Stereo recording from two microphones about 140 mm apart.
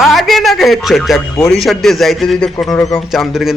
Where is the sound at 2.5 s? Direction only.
20° left (ahead or behind).